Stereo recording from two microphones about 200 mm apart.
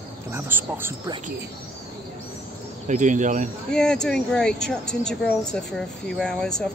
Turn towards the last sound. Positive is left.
turn(degrees=5)  # may be behind; listen again after turning